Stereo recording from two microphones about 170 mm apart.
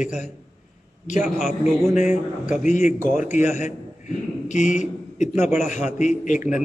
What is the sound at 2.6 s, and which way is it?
A man's voice, 45° left (ahead or behind).